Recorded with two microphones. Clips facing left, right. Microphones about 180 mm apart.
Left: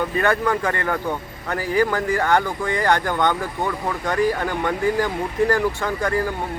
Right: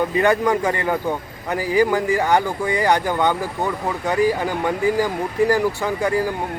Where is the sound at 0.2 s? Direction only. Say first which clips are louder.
Right 3 dB; 15° right (ahead or behind).